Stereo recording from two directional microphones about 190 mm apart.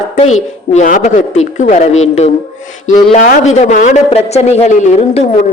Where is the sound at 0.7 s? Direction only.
40° left (ahead or behind).